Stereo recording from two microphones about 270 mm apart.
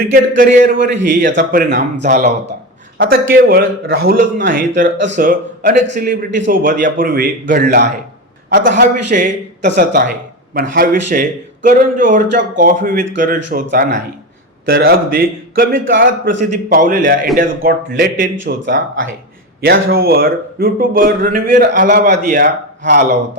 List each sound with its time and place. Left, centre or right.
0.1 s a man's voice: right